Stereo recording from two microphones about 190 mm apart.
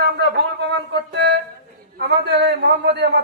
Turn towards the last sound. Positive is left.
turn(degrees=-60)  # may be behind; listen again after turning